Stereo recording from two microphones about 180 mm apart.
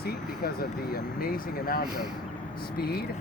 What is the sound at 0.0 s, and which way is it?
Speech, 60° left (ahead or behind).